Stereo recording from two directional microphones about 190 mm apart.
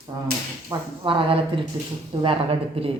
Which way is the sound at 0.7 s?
15° right (ahead or behind).